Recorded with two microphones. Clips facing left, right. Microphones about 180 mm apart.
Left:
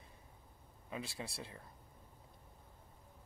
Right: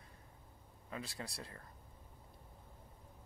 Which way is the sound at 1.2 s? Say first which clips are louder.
Left 1 dB; 25° left (ahead or behind).